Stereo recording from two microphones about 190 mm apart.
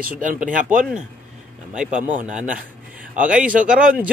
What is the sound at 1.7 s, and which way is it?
Speech, 5° right (ahead or behind).